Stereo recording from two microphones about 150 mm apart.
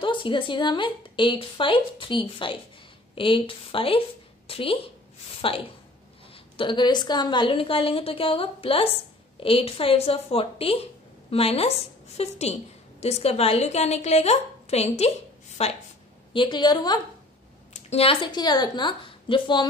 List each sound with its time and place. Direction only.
0.0 s a woman's voice: 35° left (ahead or behind)
16.3 s a woman's voice: 30° left (ahead or behind)
17.7 s a woman's voice: 45° left (ahead or behind)